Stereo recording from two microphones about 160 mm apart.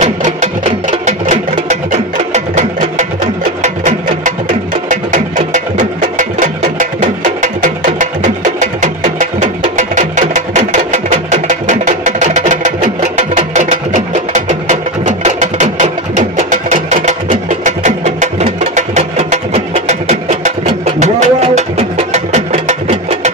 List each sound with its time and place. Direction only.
0.0 s music: 45° right (ahead or behind)